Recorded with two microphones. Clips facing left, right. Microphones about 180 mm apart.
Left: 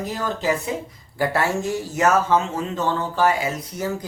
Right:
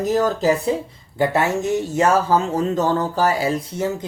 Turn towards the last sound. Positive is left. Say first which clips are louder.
# right 5 dB
turn(degrees=-30)  # may be behind; listen again after turning